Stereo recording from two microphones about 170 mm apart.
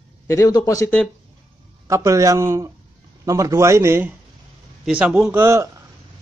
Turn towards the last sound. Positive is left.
turn(degrees=-15)  # may be behind; listen again after turning